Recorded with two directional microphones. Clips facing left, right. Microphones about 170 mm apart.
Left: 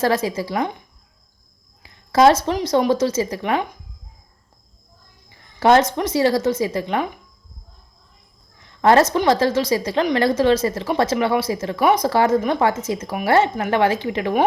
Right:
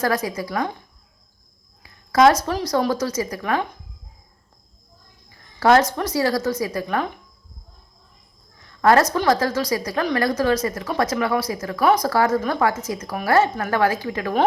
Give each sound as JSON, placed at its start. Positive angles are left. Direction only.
{"t": 0.0, "sound": "speech", "side_deg": 25}
{"t": 1.8, "sound": "speech", "side_deg": 25}
{"t": 5.5, "sound": "speech", "side_deg": 25}
{"t": 8.8, "sound": "speech", "side_deg": 25}